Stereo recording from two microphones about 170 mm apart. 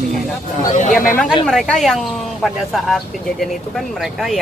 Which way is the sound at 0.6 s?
45° left (ahead or behind).